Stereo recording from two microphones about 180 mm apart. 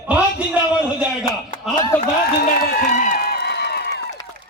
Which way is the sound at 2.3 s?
55° left (ahead or behind).